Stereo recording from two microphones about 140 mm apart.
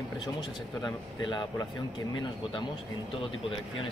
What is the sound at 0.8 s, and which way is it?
Speech, 30° left (ahead or behind).